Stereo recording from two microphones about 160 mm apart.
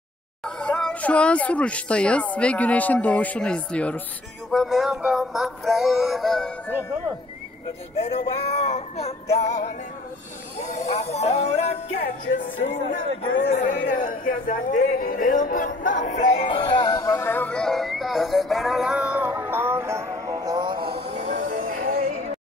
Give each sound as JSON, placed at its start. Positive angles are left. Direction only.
{"t": 0.6, "sound": "speech", "side_deg": 5}
{"t": 4.5, "sound": "music", "side_deg": 0}
{"t": 8.1, "sound": "music", "side_deg": 40}
{"t": 10.6, "sound": "music", "side_deg": 45}
{"t": 12.0, "sound": "speech", "side_deg": 60}
{"t": 16.4, "sound": "music", "side_deg": 30}
{"t": 21.3, "sound": "music", "side_deg": -55}